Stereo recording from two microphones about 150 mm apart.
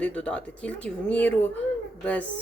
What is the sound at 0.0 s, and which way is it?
Speech, 10° left (ahead or behind).